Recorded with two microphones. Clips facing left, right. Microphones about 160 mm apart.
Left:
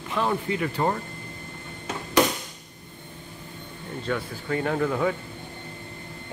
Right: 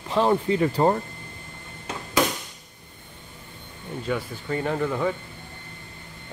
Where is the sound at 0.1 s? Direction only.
30° right (ahead or behind).